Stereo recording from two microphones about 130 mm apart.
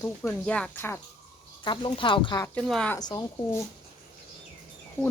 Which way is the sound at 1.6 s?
40° left (ahead or behind).